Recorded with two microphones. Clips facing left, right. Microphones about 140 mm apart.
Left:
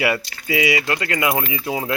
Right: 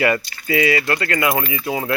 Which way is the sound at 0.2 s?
90° left.